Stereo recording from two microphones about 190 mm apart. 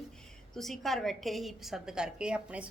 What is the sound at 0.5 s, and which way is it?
A woman's voice, centre (ahead or behind).